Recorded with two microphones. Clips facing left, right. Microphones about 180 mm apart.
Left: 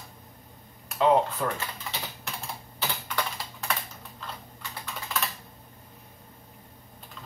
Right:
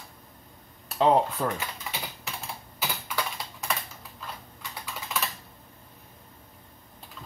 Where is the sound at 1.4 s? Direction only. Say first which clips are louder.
Right 1 dB; 30° right (ahead or behind).